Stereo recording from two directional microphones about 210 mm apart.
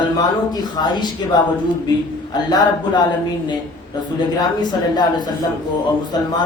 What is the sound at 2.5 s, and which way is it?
Speech, 20° left (ahead or behind).